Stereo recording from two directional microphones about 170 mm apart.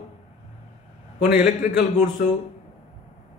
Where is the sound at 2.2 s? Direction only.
60° left (ahead or behind).